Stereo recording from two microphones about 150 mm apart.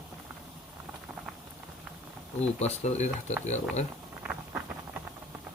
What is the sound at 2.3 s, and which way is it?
Speech, 45° left (ahead or behind).